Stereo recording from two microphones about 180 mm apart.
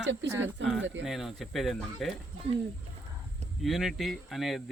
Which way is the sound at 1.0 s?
Centre (ahead or behind).